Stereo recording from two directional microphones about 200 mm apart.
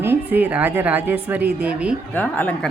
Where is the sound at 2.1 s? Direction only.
10° left (ahead or behind).